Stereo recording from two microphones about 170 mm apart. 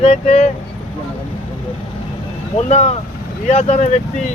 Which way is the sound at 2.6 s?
40° left (ahead or behind).